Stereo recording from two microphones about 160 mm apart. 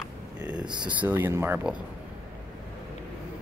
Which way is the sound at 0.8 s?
10° right (ahead or behind).